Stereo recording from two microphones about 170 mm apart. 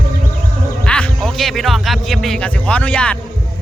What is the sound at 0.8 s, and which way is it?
A man's voice, 5° left (ahead or behind).